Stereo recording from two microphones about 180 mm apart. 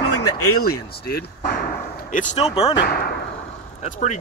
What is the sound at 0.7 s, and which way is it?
Speech, 60° left (ahead or behind).